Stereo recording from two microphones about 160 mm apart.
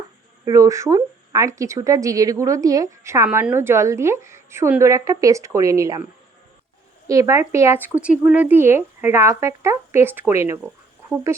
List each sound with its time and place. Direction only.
0.4 s a woman's voice: 20° right (ahead or behind)
7.1 s a woman's voice: 20° right (ahead or behind)